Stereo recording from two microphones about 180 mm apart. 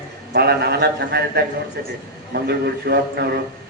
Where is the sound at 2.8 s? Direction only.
60° right (ahead or behind).